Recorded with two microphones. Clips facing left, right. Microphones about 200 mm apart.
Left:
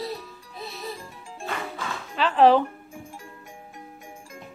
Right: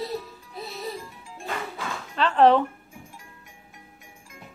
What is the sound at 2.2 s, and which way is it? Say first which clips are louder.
Music: even; 5° left (ahead or behind).